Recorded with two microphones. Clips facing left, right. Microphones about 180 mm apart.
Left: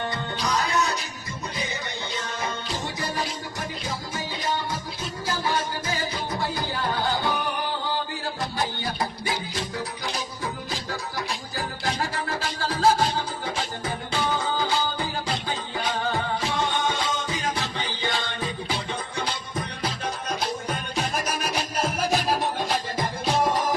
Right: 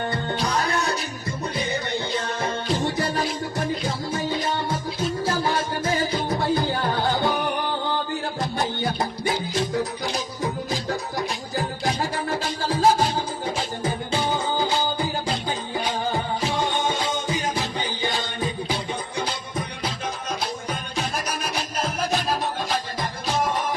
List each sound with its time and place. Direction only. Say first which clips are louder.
0.5 s music: left 2 dB; 55° right (ahead or behind)
5.2 s music: even; 30° right (ahead or behind)
8.8 s music: right 4 dB; 25° right (ahead or behind)
12.1 s music: right 3 dB; 20° right (ahead or behind)
15.4 s music: right 2 dB; 25° right (ahead or behind)
20.7 s music: even; centre (ahead or behind)
23.0 s music: left 4 dB; 35° left (ahead or behind)